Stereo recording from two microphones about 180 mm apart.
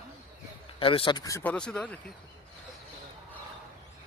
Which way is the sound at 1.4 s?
5° left (ahead or behind).